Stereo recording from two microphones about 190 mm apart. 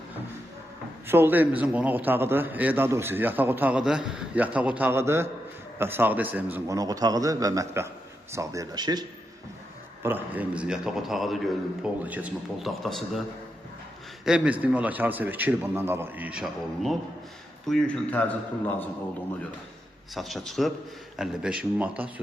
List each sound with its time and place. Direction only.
1.0 s a man's voice: 10° right (ahead or behind)
10.0 s a man's voice: 10° right (ahead or behind)
14.3 s a man's voice: 5° right (ahead or behind); by 18.9 s 10° left (ahead or behind)
20.1 s a man's voice: centre (ahead or behind)